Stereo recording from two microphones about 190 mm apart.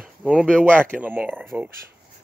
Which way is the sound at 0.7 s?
5° left (ahead or behind).